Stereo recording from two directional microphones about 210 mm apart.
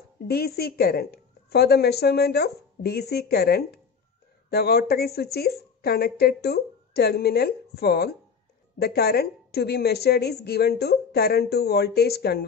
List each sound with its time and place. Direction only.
0.3 s a woman's voice: 50° left (ahead or behind)